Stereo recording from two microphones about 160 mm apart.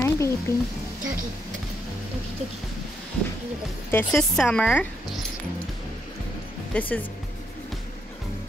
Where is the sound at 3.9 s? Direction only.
5° left (ahead or behind).